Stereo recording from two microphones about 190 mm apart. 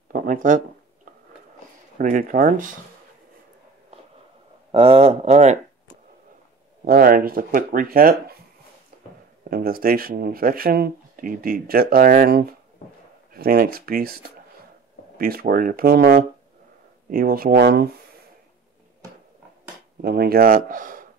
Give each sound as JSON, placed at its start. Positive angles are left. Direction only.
{"t": 0.1, "sound": "speech", "side_deg": -45}
{"t": 2.0, "sound": "speech", "side_deg": -45}
{"t": 4.7, "sound": "speech", "side_deg": -30}
{"t": 6.8, "sound": "speech", "side_deg": -50}
{"t": 9.5, "sound": "speech", "side_deg": -50}
{"t": 20.0, "sound": "speech", "side_deg": -55}